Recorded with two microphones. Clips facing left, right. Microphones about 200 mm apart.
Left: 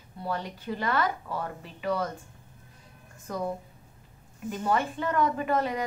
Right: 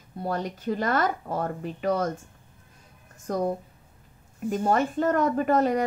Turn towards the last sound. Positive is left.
turn(degrees=-45)  # may be behind; listen again after turning